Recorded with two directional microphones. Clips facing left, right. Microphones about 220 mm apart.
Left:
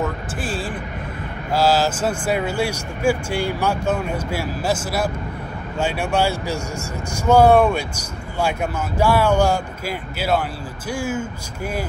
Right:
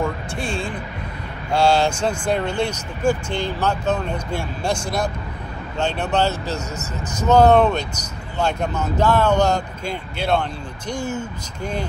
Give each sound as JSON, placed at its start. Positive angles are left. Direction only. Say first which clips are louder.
{"t": 0.0, "sound": "music", "louder": "right 1 dB", "side_deg": 5}
{"t": 1.5, "sound": "speech", "louder": "right 1 dB", "side_deg": 5}